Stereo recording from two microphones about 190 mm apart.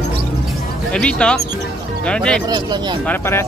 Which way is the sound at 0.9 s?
5° left (ahead or behind).